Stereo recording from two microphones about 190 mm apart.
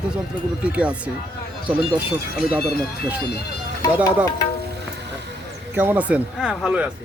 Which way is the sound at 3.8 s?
20° left (ahead or behind).